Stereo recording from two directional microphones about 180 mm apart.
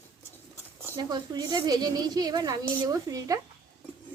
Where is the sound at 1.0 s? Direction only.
20° right (ahead or behind).